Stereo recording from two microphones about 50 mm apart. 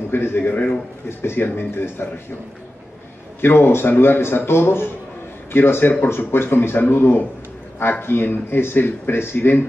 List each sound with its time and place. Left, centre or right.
0.1 s speech: left
3.3 s speech: left